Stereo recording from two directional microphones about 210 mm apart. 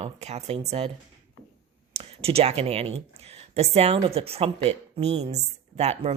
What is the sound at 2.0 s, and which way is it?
Speech, 30° right (ahead or behind).